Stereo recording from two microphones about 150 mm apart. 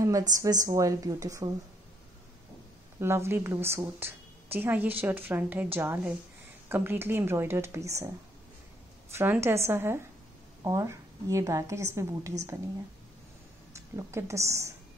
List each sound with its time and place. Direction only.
0.0 s a woman's voice: 25° right (ahead or behind)
3.0 s a woman's voice: 15° right (ahead or behind)
9.1 s a woman's voice: 15° right (ahead or behind)
13.7 s a woman's voice: 20° right (ahead or behind)